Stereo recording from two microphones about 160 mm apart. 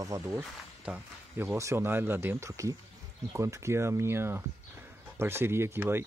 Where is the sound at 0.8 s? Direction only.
10° right (ahead or behind).